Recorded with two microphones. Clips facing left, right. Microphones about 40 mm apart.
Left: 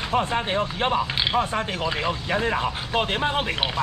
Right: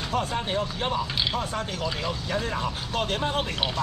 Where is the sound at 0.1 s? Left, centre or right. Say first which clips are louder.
Left 4 dB; left.